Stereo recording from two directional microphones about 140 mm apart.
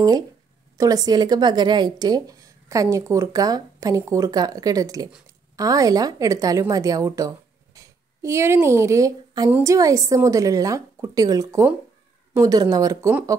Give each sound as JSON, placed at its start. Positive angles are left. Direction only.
{"t": 0.7, "sound": "speech", "side_deg": -25}